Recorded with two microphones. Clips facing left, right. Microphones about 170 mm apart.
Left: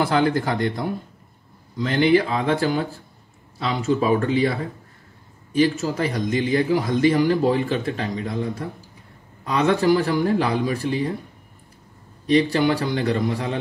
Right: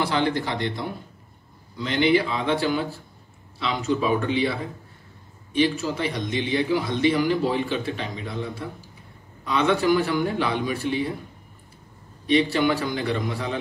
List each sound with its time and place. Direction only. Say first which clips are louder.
0.0 s a man's voice: left 4 dB; 45° left (ahead or behind)
12.3 s a man's voice: left 2 dB; 40° left (ahead or behind)